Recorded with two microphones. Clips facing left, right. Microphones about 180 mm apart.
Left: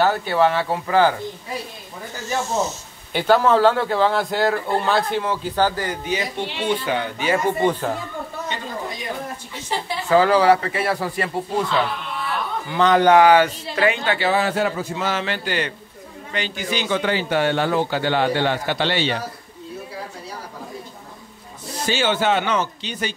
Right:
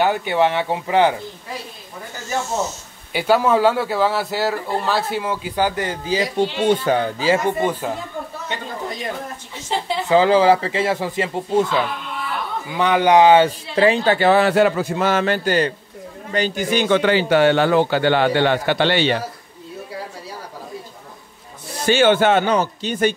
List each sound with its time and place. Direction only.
0.0 s speech: 15° right (ahead or behind)
3.1 s a man's voice: 10° right (ahead or behind); by 6.2 s 30° right (ahead or behind)
6.3 s a man's voice: 45° right (ahead or behind)
7.6 s a man's voice: 10° right (ahead or behind)
10.0 s speech: 20° right (ahead or behind)
14.2 s a man's voice: 65° right (ahead or behind)
21.8 s speech: 55° right (ahead or behind)
22.4 s a man's voice: 40° right (ahead or behind)